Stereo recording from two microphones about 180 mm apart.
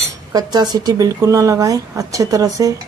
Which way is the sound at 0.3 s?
25° right (ahead or behind).